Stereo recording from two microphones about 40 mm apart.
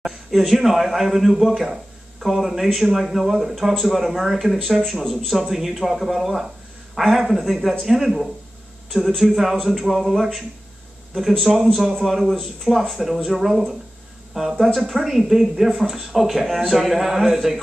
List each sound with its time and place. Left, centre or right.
0.5 s speech: centre